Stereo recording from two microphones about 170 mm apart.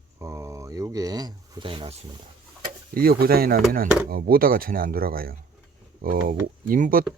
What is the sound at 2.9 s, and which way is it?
Speech, 60° right (ahead or behind).